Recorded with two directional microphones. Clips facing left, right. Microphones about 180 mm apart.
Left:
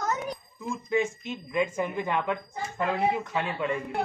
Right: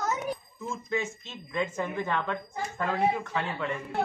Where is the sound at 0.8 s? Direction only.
10° left (ahead or behind).